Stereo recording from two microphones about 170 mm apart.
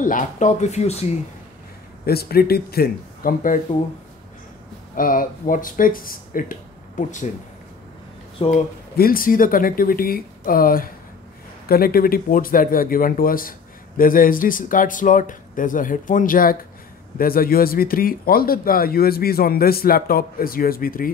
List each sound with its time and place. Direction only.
0.0 s speech: 50° left (ahead or behind)
2.0 s speech: 65° left (ahead or behind)
4.9 s speech: 55° left (ahead or behind)
8.4 s speech: 40° left (ahead or behind)
8.9 s speech: 60° left (ahead or behind)